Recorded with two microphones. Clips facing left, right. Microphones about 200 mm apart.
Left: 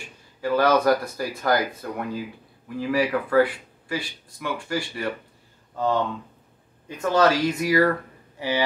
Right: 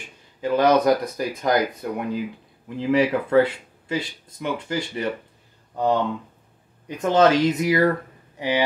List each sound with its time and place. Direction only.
0.4 s speech: 20° right (ahead or behind)
7.0 s speech: 20° right (ahead or behind)